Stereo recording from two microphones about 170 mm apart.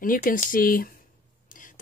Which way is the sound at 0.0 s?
55° left (ahead or behind).